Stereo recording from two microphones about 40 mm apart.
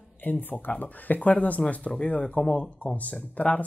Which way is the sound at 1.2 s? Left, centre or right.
Left.